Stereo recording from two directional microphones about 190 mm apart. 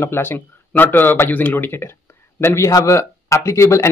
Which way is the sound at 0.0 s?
10° left (ahead or behind).